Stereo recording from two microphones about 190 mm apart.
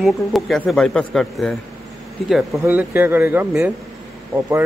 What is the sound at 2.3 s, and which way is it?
A man's voice, 10° right (ahead or behind).